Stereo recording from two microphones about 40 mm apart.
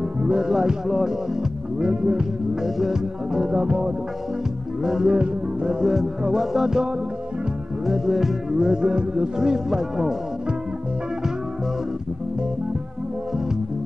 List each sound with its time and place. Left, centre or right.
0.2 s music: right
0.5 s music: centre
9.7 s music: centre